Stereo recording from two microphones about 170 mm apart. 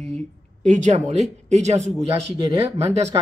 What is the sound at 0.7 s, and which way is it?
Speech, 45° right (ahead or behind).